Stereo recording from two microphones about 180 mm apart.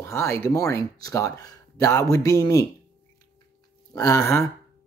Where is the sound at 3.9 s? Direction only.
20° left (ahead or behind).